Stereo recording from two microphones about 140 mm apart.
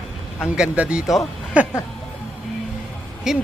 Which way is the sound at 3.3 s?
5° right (ahead or behind).